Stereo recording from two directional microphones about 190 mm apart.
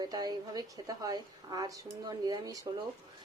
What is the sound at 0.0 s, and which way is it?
A woman's voice, 20° right (ahead or behind).